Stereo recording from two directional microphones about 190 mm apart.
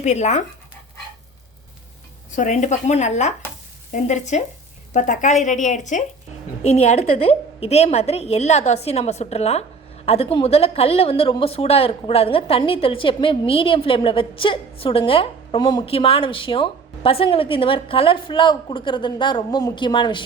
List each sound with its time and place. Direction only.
0.0 s a woman's voice: 35° left (ahead or behind)
2.3 s a woman's voice: 40° left (ahead or behind); by 20.2 s 25° left (ahead or behind)